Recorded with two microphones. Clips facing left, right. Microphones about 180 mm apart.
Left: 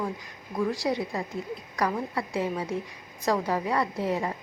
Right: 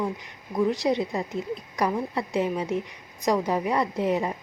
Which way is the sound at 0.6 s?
20° right (ahead or behind).